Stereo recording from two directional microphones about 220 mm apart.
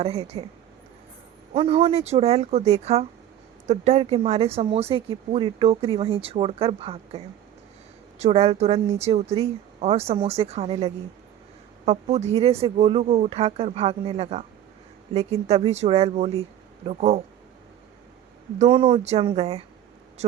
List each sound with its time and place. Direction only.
0.0 s speech: 30° right (ahead or behind)
1.5 s speech: 25° right (ahead or behind)
8.2 s speech: 30° right (ahead or behind)
18.6 s speech: 20° right (ahead or behind)